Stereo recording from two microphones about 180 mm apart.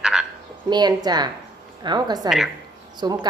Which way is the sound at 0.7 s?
25° right (ahead or behind).